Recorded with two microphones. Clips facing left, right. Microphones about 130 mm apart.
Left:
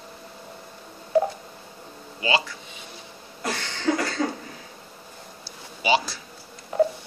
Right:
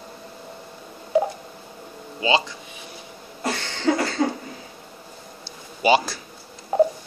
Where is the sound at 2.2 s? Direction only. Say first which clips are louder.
Right 3 dB; 20° right (ahead or behind).